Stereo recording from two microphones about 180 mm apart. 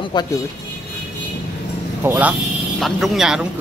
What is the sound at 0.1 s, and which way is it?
Speech, 25° left (ahead or behind).